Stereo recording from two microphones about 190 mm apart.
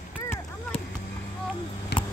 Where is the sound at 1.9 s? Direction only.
60° left (ahead or behind).